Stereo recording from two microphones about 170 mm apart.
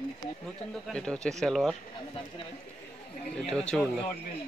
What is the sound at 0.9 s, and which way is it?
Speech, 5° left (ahead or behind).